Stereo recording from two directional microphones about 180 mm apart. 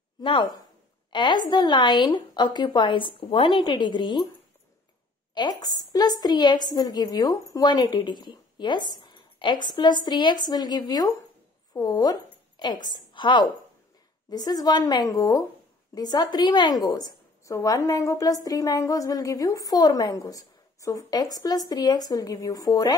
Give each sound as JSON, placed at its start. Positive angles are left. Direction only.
{"t": 0.2, "sound": "a woman's voice", "side_deg": 25}
{"t": 5.3, "sound": "a woman's voice", "side_deg": 25}
{"t": 9.0, "sound": "a sound", "side_deg": 25}
{"t": 10.0, "sound": "a woman's voice", "side_deg": 25}